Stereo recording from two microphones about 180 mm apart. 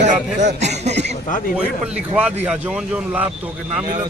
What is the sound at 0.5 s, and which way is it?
Speech, 40° right (ahead or behind).